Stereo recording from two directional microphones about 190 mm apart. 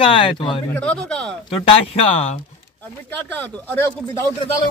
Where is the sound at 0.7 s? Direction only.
5° left (ahead or behind).